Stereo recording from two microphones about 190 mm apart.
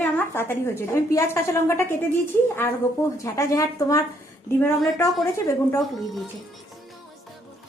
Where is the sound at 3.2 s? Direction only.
15° left (ahead or behind).